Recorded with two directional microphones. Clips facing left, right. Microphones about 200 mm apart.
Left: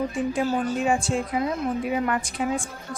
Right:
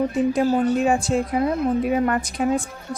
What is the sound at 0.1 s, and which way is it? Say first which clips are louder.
A woman's voice: right 5 dB; 40° right (ahead or behind).